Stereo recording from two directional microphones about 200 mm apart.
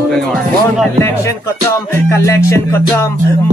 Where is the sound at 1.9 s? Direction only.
15° left (ahead or behind).